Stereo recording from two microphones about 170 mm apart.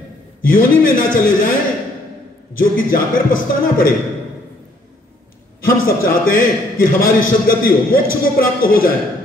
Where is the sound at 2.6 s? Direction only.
55° left (ahead or behind).